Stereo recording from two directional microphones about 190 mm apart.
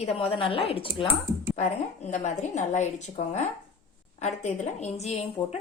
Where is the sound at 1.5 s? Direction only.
40° left (ahead or behind).